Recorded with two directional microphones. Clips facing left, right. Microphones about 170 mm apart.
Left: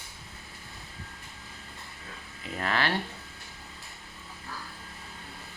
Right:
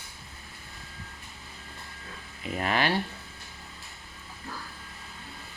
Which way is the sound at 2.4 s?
20° right (ahead or behind).